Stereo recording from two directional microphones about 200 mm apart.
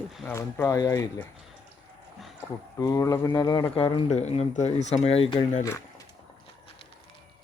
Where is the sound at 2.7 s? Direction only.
15° left (ahead or behind); by 5.2 s 30° left (ahead or behind).